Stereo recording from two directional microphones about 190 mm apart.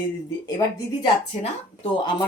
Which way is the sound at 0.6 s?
20° left (ahead or behind).